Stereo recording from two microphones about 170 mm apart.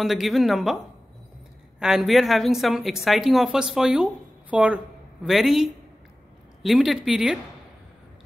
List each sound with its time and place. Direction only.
0.0 s a woman's voice: centre (ahead or behind)
1.8 s a woman's voice: 5° right (ahead or behind)